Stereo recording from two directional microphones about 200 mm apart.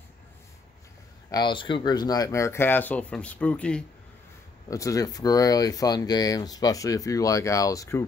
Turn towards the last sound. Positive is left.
turn(degrees=15)  # may be behind; listen again after turning